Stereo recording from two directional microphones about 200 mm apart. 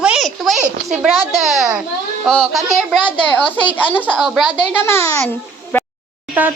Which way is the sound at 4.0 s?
5° left (ahead or behind).